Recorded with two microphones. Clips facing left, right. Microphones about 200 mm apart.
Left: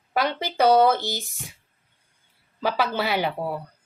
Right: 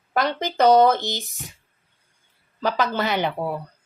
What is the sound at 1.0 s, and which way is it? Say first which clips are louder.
Speech: right 1 dB; 20° right (ahead or behind).